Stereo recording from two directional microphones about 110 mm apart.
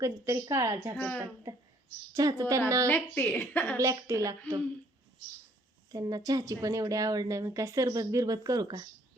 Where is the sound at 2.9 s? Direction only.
15° left (ahead or behind).